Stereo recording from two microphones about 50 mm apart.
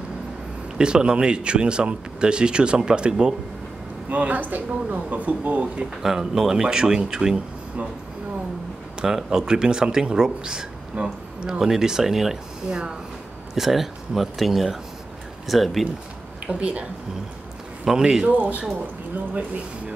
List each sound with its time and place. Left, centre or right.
0.7 s speech: centre
4.1 s speech: right
6.0 s speech: centre
9.0 s speech: centre
13.6 s speech: centre
16.4 s speech: right
17.8 s speech: centre
18.4 s speech: right